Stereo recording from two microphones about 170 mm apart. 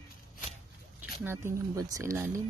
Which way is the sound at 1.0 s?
10° right (ahead or behind).